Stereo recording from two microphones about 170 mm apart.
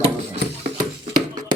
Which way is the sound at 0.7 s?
25° right (ahead or behind).